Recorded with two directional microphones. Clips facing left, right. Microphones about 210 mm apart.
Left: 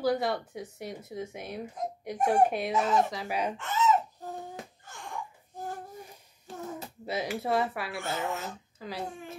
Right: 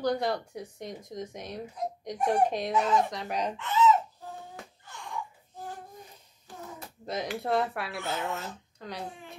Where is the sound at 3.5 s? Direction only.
45° left (ahead or behind).